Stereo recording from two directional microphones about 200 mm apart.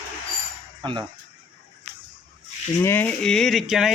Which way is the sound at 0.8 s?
25° right (ahead or behind).